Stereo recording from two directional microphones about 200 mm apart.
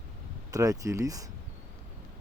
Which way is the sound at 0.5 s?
15° right (ahead or behind).